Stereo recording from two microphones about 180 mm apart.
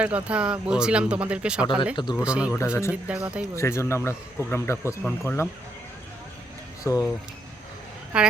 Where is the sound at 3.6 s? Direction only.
15° left (ahead or behind).